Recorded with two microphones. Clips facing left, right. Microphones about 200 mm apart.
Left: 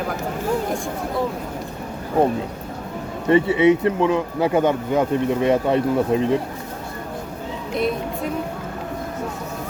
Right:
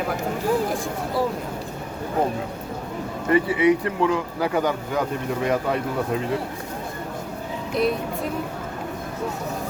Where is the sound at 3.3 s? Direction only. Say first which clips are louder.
Left 3 dB; 25° left (ahead or behind).